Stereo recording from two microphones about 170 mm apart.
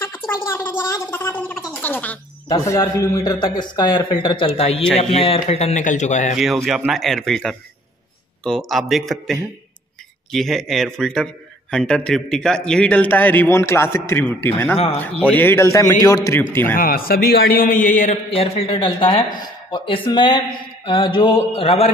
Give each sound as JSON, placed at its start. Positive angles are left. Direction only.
{"t": 0.5, "sound": "a man's voice", "side_deg": 15}
{"t": 2.4, "sound": "a man's voice", "side_deg": 20}
{"t": 6.3, "sound": "a man's voice", "side_deg": 0}
{"t": 16.7, "sound": "a man's voice", "side_deg": 60}
{"t": 18.3, "sound": "speech", "side_deg": 35}